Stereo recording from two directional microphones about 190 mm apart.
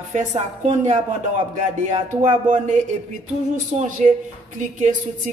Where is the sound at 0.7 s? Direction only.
40° right (ahead or behind).